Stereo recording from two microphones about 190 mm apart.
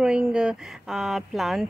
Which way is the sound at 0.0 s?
5° right (ahead or behind).